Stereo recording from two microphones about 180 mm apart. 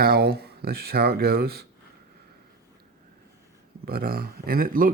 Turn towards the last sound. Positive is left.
turn(degrees=-50)  # may be behind; listen again after turning